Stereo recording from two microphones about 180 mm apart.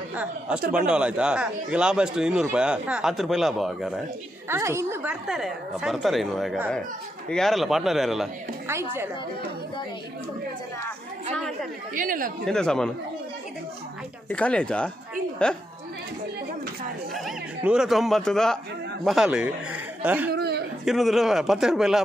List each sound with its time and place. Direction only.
0.1 s speech: 5° right (ahead or behind)
4.5 s speech: 15° right (ahead or behind)
5.3 s speech: centre (ahead or behind)
11.9 s a woman's voice: 50° right (ahead or behind)
12.4 s speech: 5° left (ahead or behind)
14.3 s speech: 5° left (ahead or behind)
17.1 s speech: centre (ahead or behind)
20.3 s speech: 65° right (ahead or behind)
20.8 s speech: centre (ahead or behind)